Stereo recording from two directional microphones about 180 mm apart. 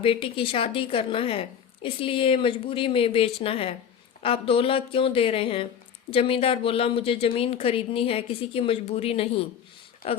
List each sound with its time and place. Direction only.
0.0 s a woman's voice: 30° left (ahead or behind)